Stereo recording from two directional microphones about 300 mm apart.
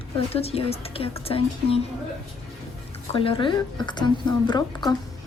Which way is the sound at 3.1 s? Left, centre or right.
Centre.